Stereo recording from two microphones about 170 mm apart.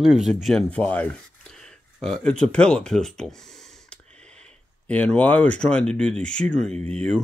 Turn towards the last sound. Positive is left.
turn(degrees=5)  # may be behind; listen again after turning